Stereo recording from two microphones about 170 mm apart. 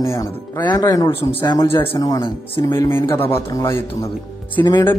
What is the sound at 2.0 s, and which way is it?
A man's voice, 20° left (ahead or behind).